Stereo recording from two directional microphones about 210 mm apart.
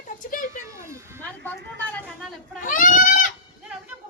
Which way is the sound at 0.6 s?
15° right (ahead or behind).